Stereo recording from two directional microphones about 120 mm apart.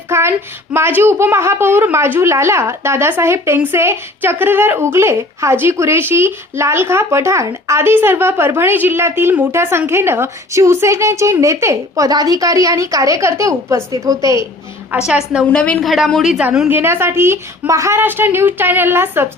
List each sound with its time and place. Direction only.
0.1 s a woman's voice: 20° right (ahead or behind)
14.9 s a woman's voice: 10° right (ahead or behind)
15.5 s a woman's voice: 10° left (ahead or behind)
16.6 s a woman's voice: 20° right (ahead or behind)